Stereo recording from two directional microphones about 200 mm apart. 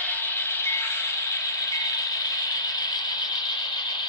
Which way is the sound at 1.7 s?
15° left (ahead or behind).